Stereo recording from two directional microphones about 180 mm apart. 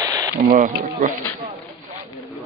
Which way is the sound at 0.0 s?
20° right (ahead or behind).